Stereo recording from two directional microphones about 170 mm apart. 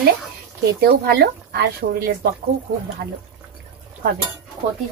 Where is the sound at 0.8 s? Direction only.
70° right (ahead or behind).